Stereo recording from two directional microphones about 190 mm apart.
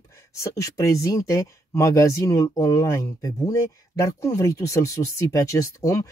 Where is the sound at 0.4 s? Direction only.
15° left (ahead or behind).